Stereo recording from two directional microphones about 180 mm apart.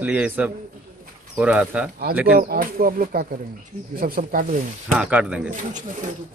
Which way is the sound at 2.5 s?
55° right (ahead or behind).